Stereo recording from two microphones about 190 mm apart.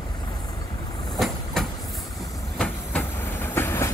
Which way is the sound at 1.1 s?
Centre (ahead or behind).